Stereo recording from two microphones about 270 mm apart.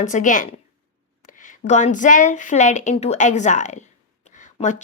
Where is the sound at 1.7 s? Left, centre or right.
Left.